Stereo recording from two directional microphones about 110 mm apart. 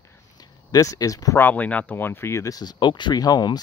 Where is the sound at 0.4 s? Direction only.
35° left (ahead or behind).